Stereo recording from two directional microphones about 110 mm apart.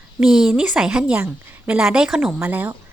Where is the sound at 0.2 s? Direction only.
5° right (ahead or behind).